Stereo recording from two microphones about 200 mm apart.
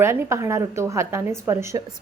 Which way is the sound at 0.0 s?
10° right (ahead or behind).